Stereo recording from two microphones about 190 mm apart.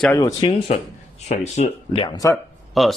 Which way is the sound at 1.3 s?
35° left (ahead or behind).